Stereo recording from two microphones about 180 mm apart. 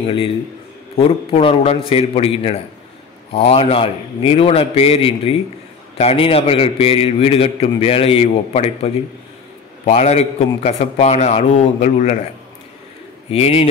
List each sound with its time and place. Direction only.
0.0 s a man's voice: 30° left (ahead or behind)
13.3 s a man's voice: 35° left (ahead or behind)